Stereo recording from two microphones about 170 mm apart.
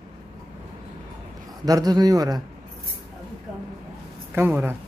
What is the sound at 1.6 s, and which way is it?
Speech, 20° right (ahead or behind).